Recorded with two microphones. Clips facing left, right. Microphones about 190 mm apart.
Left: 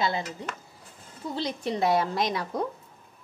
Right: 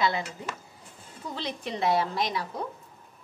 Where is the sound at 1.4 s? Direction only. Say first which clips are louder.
Left 4 dB; 40° left (ahead or behind).